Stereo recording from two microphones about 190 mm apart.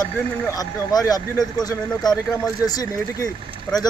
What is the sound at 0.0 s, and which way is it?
Speech, 20° left (ahead or behind).